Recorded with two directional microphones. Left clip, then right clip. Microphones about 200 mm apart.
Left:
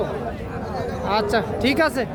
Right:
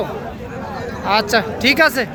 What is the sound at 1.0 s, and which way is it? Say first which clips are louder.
Speech: right 6 dB; centre (ahead or behind).